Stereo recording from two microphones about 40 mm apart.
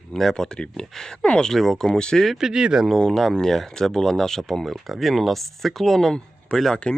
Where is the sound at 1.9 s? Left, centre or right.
Left.